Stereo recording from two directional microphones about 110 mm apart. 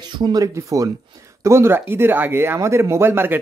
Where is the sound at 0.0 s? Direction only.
40° right (ahead or behind).